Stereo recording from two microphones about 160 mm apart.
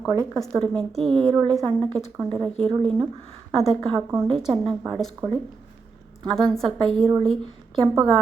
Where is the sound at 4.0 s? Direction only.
15° right (ahead or behind).